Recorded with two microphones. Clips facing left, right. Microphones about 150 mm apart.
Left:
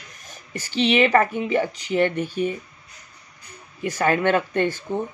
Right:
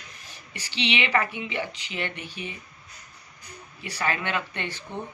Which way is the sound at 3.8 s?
45° left (ahead or behind).